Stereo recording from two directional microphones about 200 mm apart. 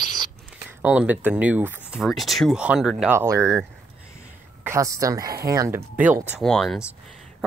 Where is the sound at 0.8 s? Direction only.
5° right (ahead or behind).